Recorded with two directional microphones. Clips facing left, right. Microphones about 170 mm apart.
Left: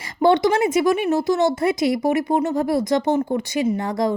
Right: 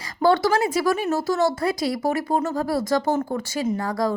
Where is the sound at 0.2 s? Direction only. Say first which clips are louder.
Left 3 dB; 20° left (ahead or behind).